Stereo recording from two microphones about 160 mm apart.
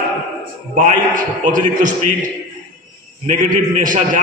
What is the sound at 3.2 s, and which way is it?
Speech, 55° right (ahead or behind).